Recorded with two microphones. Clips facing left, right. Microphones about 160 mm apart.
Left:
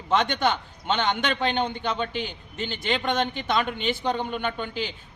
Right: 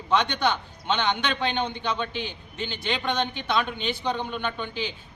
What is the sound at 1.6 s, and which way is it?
A man's voice, 50° left (ahead or behind).